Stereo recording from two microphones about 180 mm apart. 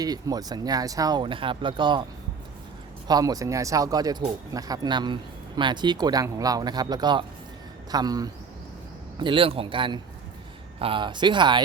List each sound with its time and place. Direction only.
0.0 s speech: 20° right (ahead or behind)
3.1 s speech: 20° right (ahead or behind)